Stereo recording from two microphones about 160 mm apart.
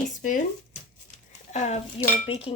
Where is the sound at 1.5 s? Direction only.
45° left (ahead or behind).